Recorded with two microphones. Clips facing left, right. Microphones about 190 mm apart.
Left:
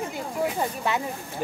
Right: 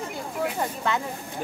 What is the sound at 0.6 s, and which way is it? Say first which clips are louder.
Speech: even; 15° left (ahead or behind).